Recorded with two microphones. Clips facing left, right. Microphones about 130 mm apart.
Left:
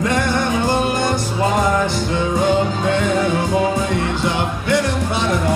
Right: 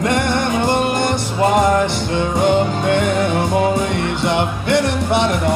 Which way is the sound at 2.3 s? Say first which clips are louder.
Right 2 dB; 65° right (ahead or behind).